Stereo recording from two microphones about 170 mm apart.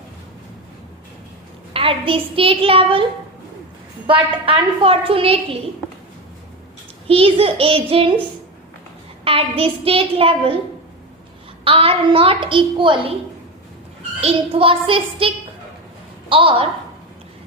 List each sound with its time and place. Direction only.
1.7 s a woman's voice: 35° right (ahead or behind)
7.1 s a woman's voice: 35° right (ahead or behind)
11.6 s a woman's voice: 35° right (ahead or behind)
14.2 s a woman's voice: 35° right (ahead or behind)
16.3 s a woman's voice: 30° right (ahead or behind)